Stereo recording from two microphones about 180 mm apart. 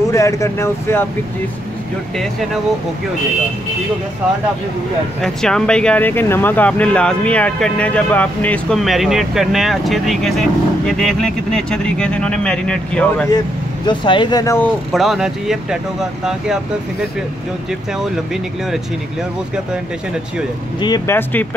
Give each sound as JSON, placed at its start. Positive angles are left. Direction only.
{"t": 0.1, "sound": "speech", "side_deg": 15}
{"t": 5.2, "sound": "speech", "side_deg": 5}
{"t": 13.8, "sound": "speech", "side_deg": 25}
{"t": 14.9, "sound": "speech", "side_deg": 0}
{"t": 21.1, "sound": "speech", "side_deg": 10}